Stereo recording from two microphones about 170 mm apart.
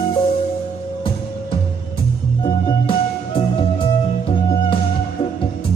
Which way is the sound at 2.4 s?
30° left (ahead or behind).